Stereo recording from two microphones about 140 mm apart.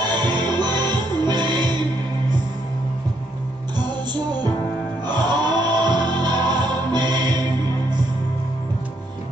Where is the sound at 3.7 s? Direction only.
30° right (ahead or behind).